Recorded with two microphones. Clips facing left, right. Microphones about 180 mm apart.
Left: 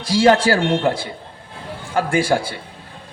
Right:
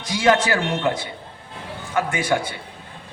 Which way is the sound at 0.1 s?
35° left (ahead or behind).